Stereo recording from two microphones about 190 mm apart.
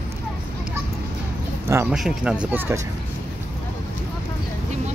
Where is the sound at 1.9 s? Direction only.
5° right (ahead or behind).